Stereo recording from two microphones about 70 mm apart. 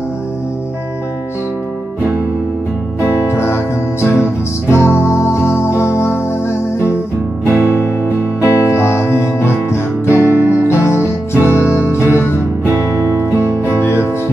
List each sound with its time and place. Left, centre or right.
3.0 s music: left
8.4 s music: left
10.2 s music: right
10.7 s music: left